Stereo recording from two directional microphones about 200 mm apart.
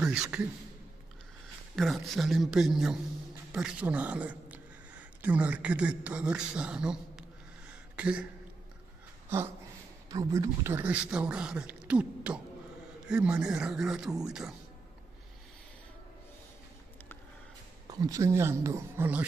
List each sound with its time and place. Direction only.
0.0 s a man's voice: 5° right (ahead or behind)
1.8 s speech: centre (ahead or behind)
7.9 s a sound: 5° right (ahead or behind)
10.0 s speech: 15° right (ahead or behind)
17.8 s speech: 20° right (ahead or behind)